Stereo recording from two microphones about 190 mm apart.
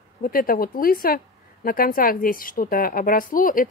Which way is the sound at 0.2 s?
50° left (ahead or behind).